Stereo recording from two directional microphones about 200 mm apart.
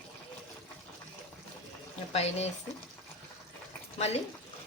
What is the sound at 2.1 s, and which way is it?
Speech, 30° left (ahead or behind).